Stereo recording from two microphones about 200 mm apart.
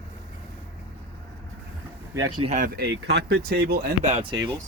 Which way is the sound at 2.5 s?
40° right (ahead or behind).